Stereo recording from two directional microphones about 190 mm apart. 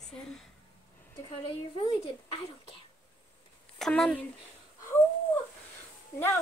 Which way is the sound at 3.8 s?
5° left (ahead or behind).